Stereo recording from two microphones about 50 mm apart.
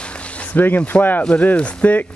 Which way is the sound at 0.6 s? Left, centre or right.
Left.